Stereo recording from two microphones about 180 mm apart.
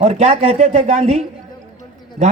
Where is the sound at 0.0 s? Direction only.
40° right (ahead or behind).